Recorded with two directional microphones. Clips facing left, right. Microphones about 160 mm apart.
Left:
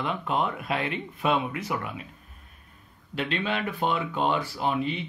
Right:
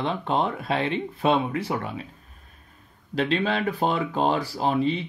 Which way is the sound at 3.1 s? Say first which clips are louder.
Right 5 dB; 35° right (ahead or behind).